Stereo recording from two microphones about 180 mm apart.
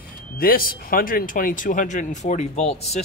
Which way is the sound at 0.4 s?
55° left (ahead or behind).